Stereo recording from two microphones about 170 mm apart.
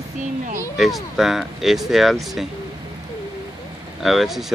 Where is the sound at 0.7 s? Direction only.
Centre (ahead or behind).